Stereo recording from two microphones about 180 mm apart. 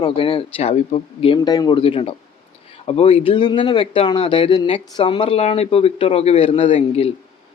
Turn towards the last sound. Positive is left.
turn(degrees=35)  # may be behind; listen again after turning